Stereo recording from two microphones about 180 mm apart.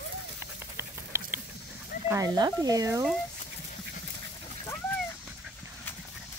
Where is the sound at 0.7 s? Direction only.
15° right (ahead or behind).